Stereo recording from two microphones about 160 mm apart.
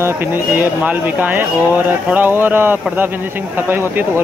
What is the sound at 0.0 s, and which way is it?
Speech, 15° right (ahead or behind).